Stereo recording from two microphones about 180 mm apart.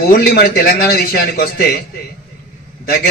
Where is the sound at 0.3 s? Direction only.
60° left (ahead or behind).